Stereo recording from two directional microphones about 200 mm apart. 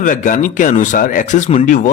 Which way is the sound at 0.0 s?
40° left (ahead or behind).